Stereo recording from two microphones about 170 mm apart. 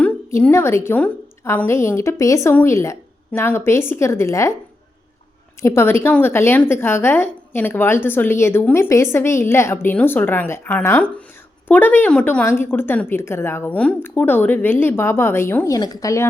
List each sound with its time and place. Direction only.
0.0 s a woman's voice: 10° left (ahead or behind)
5.6 s a woman's voice: 15° left (ahead or behind)